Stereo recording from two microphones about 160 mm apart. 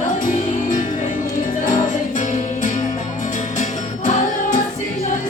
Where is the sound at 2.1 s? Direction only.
50° left (ahead or behind).